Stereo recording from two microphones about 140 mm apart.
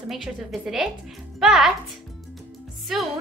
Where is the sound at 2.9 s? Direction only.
5° right (ahead or behind).